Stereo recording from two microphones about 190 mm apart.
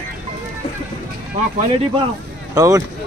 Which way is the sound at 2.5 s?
20° right (ahead or behind).